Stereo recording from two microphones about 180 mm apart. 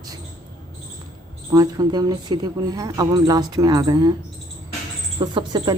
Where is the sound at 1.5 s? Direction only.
20° right (ahead or behind).